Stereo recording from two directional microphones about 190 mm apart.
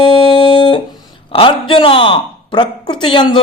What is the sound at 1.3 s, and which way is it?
Speech, 30° left (ahead or behind).